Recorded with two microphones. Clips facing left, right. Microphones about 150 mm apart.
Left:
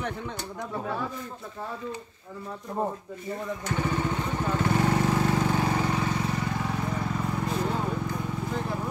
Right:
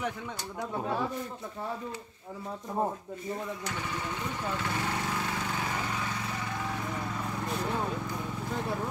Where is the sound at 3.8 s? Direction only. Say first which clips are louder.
Left 7 dB; 45° left (ahead or behind).